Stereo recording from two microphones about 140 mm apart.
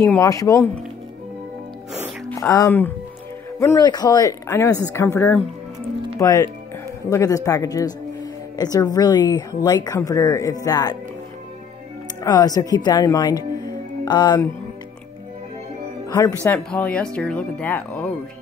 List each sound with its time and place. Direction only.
0.0 s speech: 20° left (ahead or behind)
2.3 s speech: 25° left (ahead or behind)
6.1 s speech: 25° left (ahead or behind)
12.2 s speech: 30° left (ahead or behind)
16.1 s speech: 25° left (ahead or behind)
16.4 s speech: 10° left (ahead or behind)